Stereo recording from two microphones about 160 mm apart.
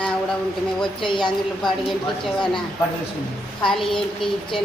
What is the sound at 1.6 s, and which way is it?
A woman's voice, centre (ahead or behind).